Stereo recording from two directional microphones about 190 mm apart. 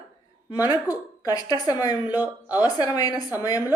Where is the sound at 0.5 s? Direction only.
20° left (ahead or behind).